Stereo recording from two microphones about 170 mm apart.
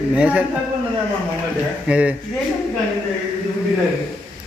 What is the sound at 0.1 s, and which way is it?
Speech, 10° right (ahead or behind).